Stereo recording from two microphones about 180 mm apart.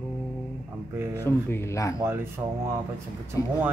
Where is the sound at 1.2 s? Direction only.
15° left (ahead or behind).